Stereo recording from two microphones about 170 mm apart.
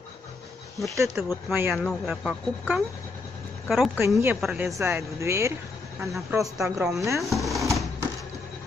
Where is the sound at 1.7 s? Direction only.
Centre (ahead or behind).